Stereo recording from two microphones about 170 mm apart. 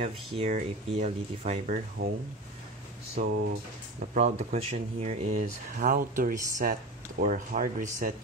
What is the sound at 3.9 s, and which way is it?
Speech, 45° right (ahead or behind).